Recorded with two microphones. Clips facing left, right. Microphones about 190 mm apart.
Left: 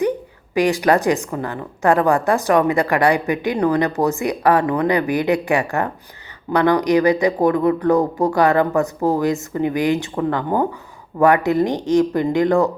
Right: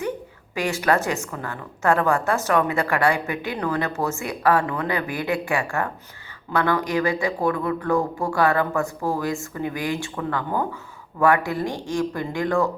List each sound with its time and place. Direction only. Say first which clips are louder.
0.5 s a woman's voice: left 6 dB; 15° left (ahead or behind)